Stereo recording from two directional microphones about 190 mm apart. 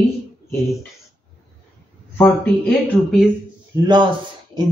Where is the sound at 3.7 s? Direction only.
20° right (ahead or behind).